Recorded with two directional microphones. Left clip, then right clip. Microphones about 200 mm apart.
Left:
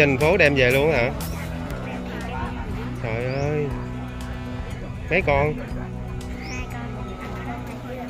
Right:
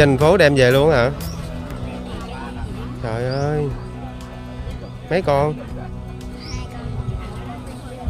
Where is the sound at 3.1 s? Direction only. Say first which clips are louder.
Right 3 dB; 25° right (ahead or behind).